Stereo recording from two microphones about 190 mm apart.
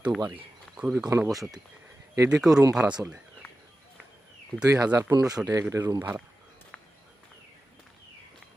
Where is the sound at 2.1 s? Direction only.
15° right (ahead or behind).